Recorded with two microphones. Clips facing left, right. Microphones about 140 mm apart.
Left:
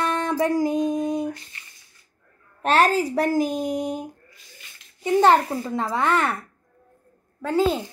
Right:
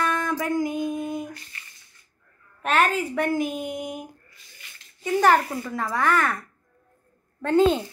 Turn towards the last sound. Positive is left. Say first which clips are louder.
# right 2 dB
turn(degrees=5)  # may be behind; listen again after turning